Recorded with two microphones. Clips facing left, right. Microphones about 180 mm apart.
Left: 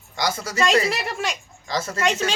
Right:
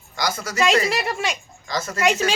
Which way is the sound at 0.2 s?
25° left (ahead or behind).